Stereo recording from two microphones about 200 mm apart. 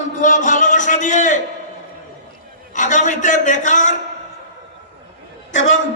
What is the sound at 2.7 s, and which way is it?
A man's voice, 40° left (ahead or behind).